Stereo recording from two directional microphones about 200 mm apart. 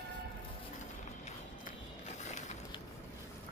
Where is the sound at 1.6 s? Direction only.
35° left (ahead or behind).